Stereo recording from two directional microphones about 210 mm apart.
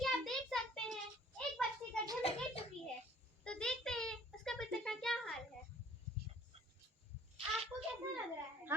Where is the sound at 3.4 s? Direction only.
5° left (ahead or behind).